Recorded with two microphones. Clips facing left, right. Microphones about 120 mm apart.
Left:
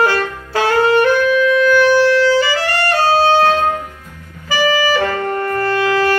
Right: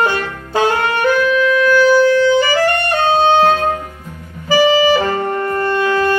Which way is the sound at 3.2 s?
30° right (ahead or behind).